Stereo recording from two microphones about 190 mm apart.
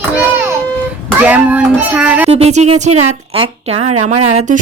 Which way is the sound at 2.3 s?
35° right (ahead or behind).